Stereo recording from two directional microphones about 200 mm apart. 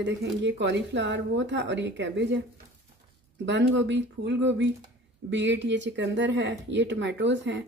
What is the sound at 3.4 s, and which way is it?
Speech, 65° right (ahead or behind).